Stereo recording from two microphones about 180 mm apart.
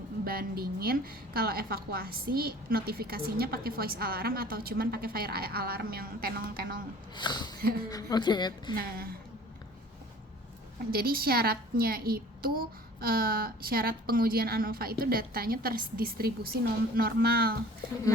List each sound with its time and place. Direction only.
0.3 s a woman's voice: 55° right (ahead or behind)
7.2 s a woman's voice: 25° left (ahead or behind)
8.7 s a woman's voice: 55° right (ahead or behind)
10.9 s a woman's voice: 55° right (ahead or behind)